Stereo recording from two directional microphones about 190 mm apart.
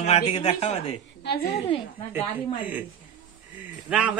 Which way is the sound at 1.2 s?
55° left (ahead or behind).